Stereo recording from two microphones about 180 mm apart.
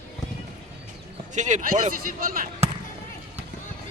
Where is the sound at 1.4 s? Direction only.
45° right (ahead or behind).